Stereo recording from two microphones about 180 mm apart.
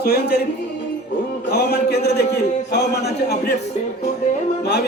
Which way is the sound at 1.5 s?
60° left (ahead or behind).